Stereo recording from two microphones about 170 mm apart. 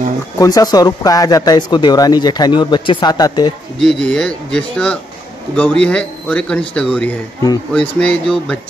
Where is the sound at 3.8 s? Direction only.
5° left (ahead or behind).